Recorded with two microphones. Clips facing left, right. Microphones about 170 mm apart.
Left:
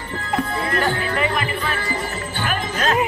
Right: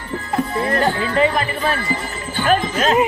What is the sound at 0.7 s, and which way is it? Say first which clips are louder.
Speech: right 3 dB; 25° right (ahead or behind).